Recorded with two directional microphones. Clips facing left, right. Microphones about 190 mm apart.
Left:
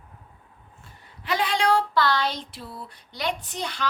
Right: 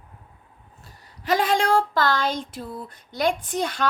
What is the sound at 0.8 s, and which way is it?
Speech, 45° right (ahead or behind).